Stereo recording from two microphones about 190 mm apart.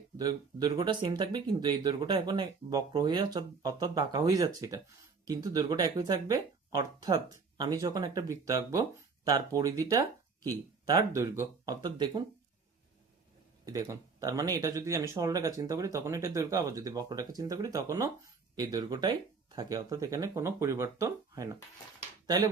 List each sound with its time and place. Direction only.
0.2 s speech: 20° right (ahead or behind)
13.7 s speech: 20° right (ahead or behind)